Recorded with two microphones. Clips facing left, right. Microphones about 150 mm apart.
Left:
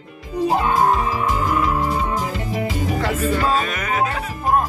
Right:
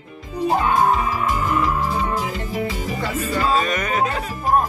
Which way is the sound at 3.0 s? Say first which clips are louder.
Left 5 dB; 70° left (ahead or behind).